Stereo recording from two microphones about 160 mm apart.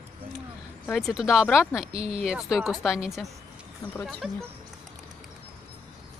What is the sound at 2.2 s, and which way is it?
Speech, 5° right (ahead or behind).